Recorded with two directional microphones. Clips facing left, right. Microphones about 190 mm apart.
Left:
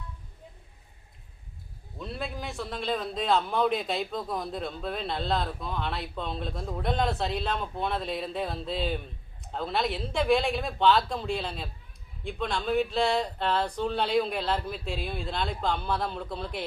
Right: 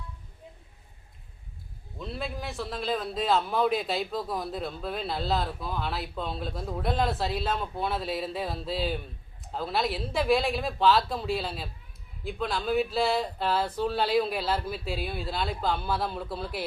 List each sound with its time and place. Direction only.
2.0 s a man's voice: centre (ahead or behind)